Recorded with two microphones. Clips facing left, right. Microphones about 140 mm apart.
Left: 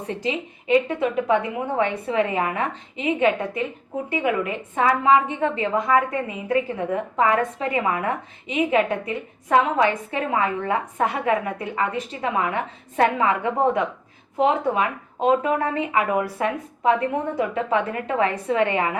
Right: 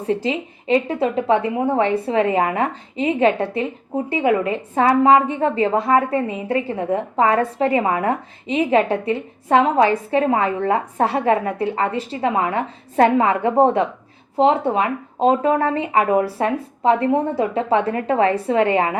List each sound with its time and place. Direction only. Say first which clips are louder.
0.1 s a woman's voice: right 6 dB; 30° right (ahead or behind)